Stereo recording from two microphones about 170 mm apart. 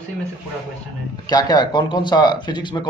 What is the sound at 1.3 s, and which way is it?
Speech, 25° left (ahead or behind).